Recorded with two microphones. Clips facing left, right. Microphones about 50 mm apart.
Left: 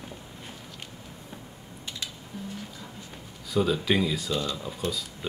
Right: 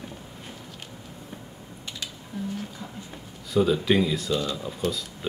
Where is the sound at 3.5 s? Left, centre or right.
Centre.